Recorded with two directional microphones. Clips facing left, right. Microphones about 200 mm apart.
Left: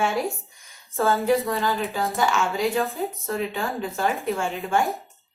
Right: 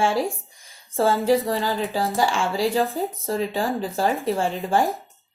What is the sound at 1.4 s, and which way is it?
Speech, centre (ahead or behind).